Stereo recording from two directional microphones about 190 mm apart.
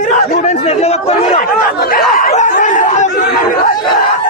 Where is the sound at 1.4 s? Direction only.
50° left (ahead or behind).